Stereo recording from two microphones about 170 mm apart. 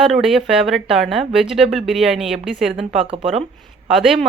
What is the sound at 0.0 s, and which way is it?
Speech, centre (ahead or behind).